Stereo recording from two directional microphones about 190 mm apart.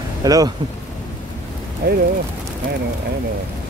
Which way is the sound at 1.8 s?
55° right (ahead or behind).